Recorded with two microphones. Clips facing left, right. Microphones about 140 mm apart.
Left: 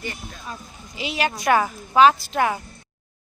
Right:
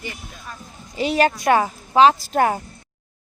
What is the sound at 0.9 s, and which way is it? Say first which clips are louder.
Speech: right 7 dB; 45° right (ahead or behind).